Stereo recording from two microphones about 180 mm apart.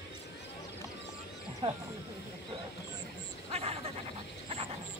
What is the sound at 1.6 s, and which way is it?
Speech, 30° right (ahead or behind).